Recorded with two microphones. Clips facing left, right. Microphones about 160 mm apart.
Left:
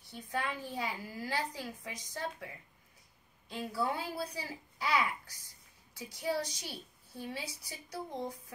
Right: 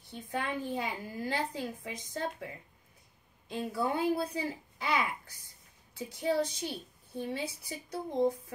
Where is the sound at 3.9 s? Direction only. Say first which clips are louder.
Right 8 dB; 55° right (ahead or behind).